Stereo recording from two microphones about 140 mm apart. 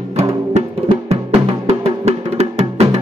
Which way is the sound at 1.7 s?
50° right (ahead or behind).